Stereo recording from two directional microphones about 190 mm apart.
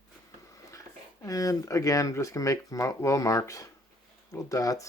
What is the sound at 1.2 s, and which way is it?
Speech, 15° left (ahead or behind).